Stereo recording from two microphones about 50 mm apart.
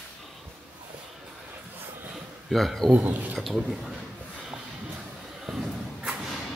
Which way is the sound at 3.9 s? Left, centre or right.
Centre.